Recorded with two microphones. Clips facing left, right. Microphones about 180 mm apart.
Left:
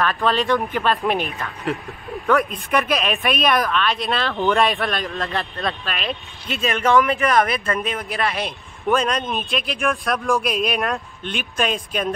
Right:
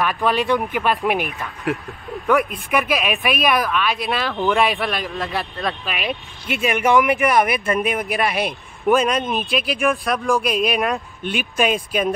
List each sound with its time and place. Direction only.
0.0 s speech: 10° right (ahead or behind)
2.7 s speech: 5° right (ahead or behind)